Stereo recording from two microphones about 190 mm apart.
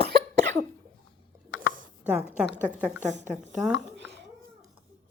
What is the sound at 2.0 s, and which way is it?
A woman's voice, 5° right (ahead or behind).